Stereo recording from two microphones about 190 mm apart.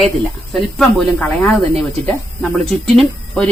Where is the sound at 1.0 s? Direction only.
5° left (ahead or behind).